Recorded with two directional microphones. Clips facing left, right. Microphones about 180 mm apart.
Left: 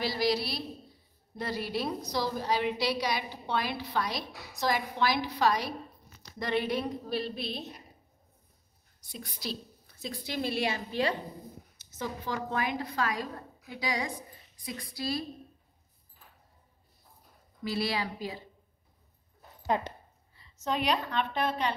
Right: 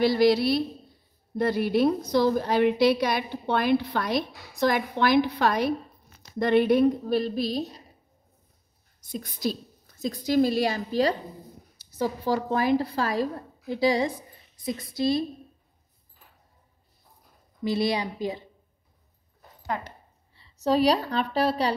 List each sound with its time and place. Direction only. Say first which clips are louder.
0.0 s a woman's voice: right 9 dB; 55° right (ahead or behind); by 7.7 s 40° right (ahead or behind)
9.1 s a woman's voice: right 9 dB; 45° right (ahead or behind); by 15.2 s 20° right (ahead or behind)
17.6 s a woman's voice: right 6 dB; 20° right (ahead or behind)
19.6 s speech: left 2 dB; 20° left (ahead or behind)
20.3 s a woman's voice: right 9 dB; 35° right (ahead or behind)